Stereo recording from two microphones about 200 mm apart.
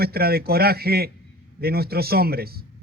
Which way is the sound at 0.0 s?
50° right (ahead or behind).